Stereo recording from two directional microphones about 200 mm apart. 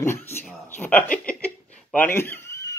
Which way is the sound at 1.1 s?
5° left (ahead or behind).